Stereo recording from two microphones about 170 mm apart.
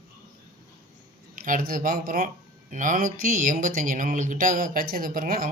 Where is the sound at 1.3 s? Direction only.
55° right (ahead or behind).